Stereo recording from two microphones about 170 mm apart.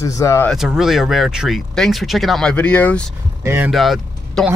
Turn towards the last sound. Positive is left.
turn(degrees=0)  # may be behind; listen again after turning